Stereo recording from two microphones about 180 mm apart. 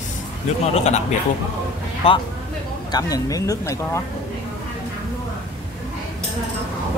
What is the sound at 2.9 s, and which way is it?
Speech, 20° left (ahead or behind).